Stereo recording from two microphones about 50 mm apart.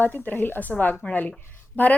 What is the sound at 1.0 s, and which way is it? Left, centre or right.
Speech, left.